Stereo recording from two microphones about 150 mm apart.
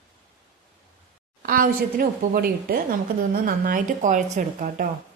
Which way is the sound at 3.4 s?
65° right (ahead or behind).